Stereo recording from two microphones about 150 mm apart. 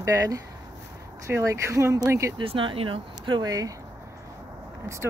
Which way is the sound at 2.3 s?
35° right (ahead or behind).